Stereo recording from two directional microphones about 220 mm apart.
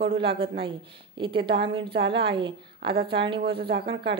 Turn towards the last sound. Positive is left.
turn(degrees=-50)  # may be behind; listen again after turning